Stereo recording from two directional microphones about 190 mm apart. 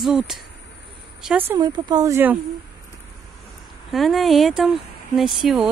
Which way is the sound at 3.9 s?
Centre (ahead or behind).